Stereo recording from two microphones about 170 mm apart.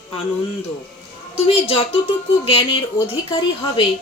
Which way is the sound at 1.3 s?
35° left (ahead or behind).